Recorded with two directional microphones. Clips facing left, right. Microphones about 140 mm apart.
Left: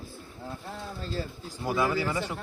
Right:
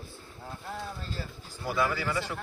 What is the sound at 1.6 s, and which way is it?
Speech, 20° left (ahead or behind).